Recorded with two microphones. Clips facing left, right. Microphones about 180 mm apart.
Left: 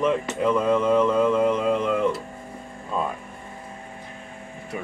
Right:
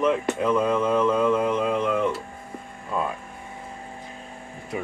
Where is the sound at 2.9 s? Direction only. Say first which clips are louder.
Even; 5° right (ahead or behind).